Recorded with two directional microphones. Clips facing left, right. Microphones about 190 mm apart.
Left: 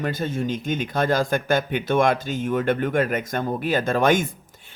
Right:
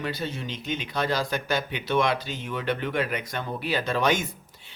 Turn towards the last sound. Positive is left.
turn(degrees=50)  # may be behind; listen again after turning